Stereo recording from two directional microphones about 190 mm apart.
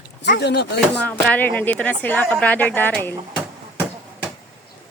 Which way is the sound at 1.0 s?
10° left (ahead or behind).